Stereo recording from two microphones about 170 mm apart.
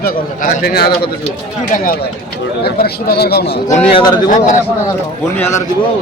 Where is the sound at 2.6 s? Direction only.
65° left (ahead or behind).